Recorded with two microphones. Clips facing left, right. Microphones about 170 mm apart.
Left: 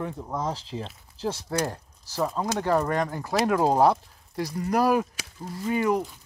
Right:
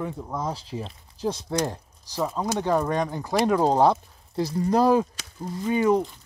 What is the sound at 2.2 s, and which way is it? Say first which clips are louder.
Speech: even; 5° right (ahead or behind).